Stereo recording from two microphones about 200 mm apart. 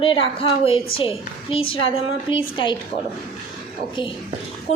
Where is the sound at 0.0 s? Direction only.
25° left (ahead or behind).